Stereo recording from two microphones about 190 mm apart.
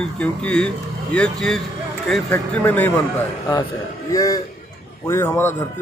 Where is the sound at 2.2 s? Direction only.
15° left (ahead or behind).